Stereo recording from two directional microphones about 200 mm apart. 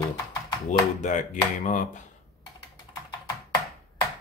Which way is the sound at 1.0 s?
40° left (ahead or behind).